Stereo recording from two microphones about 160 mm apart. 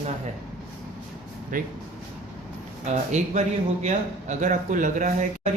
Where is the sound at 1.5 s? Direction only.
60° right (ahead or behind).